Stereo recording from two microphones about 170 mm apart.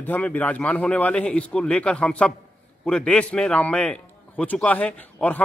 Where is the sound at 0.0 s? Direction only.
10° left (ahead or behind).